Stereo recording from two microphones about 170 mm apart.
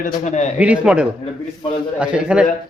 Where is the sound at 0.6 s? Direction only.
5° right (ahead or behind).